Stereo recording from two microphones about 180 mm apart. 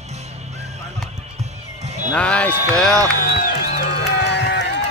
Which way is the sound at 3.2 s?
55° left (ahead or behind).